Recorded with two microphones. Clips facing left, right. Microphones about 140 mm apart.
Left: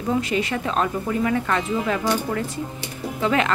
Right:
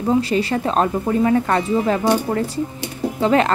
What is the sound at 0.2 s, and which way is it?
Speech, 35° right (ahead or behind).